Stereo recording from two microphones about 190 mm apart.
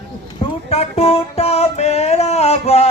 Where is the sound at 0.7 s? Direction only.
30° left (ahead or behind).